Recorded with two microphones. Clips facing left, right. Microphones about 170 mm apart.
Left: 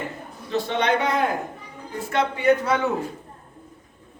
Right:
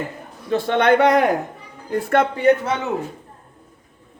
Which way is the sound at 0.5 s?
55° right (ahead or behind).